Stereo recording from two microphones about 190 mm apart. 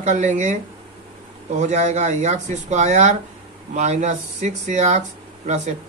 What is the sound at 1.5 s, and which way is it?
Speech, 40° right (ahead or behind).